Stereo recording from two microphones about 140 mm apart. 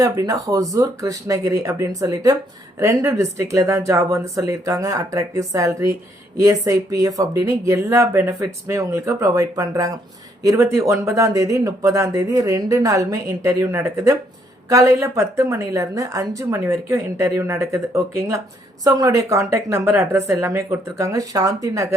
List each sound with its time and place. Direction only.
0.0 s speech: 25° right (ahead or behind)